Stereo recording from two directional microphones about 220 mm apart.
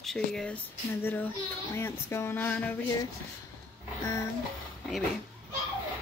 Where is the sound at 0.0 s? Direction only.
Centre (ahead or behind).